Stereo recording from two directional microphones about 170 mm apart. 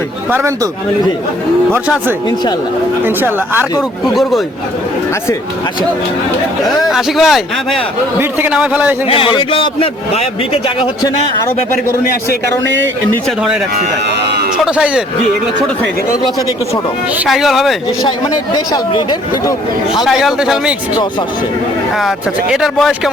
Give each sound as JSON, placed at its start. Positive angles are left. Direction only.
{"t": 0.3, "sound": "speech", "side_deg": -15}
{"t": 3.0, "sound": "speech", "side_deg": -10}
{"t": 6.9, "sound": "speech", "side_deg": 0}
{"t": 9.0, "sound": "a man's voice", "side_deg": 30}
{"t": 12.6, "sound": "speech", "side_deg": -90}
{"t": 14.6, "sound": "speech", "side_deg": -5}
{"t": 17.2, "sound": "speech", "side_deg": 0}
{"t": 18.5, "sound": "speech", "side_deg": 25}
{"t": 20.1, "sound": "speech", "side_deg": 0}
{"t": 21.9, "sound": "speech", "side_deg": 0}